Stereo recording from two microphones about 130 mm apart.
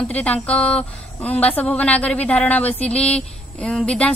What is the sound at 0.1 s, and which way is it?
A woman's voice, 10° left (ahead or behind).